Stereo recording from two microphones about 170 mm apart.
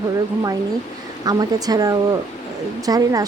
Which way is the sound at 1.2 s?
25° right (ahead or behind).